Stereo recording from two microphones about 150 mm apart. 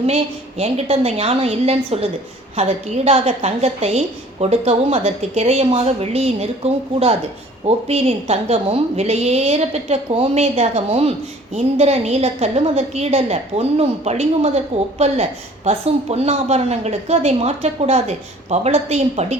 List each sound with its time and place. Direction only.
0.6 s a woman's voice: 45° right (ahead or behind)
7.9 s a woman's voice: 45° right (ahead or behind)